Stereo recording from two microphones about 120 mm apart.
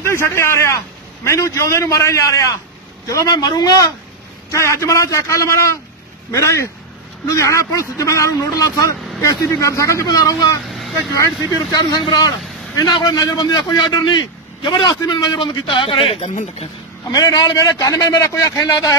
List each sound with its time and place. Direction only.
0.0 s a man's voice: 20° left (ahead or behind)
10.7 s vehicle: centre (ahead or behind)
11.7 s speech: 35° left (ahead or behind); by 16.3 s 50° left (ahead or behind)
17.1 s a man's voice: 35° left (ahead or behind)